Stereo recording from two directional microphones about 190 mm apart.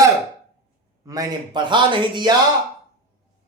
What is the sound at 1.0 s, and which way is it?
A man's voice, 20° right (ahead or behind).